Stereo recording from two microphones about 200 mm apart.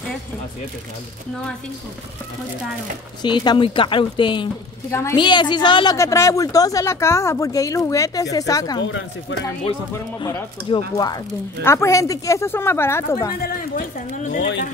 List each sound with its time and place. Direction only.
3.2 s a woman's voice: 20° left (ahead or behind)
10.1 s a woman's voice: 20° left (ahead or behind)
13.7 s a woman's voice: 40° left (ahead or behind)
14.4 s speech: 60° left (ahead or behind)